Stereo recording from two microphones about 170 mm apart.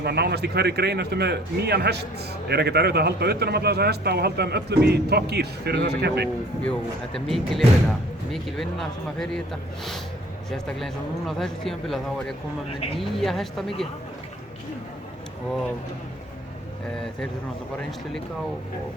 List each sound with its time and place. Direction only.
0.0 s a man's voice: 75° right (ahead or behind)
6.6 s speech: 5° left (ahead or behind)